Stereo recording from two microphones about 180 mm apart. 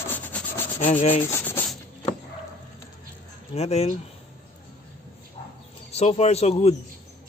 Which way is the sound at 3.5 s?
35° left (ahead or behind).